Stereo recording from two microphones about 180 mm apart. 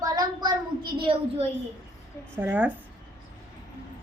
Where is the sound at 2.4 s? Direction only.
10° right (ahead or behind).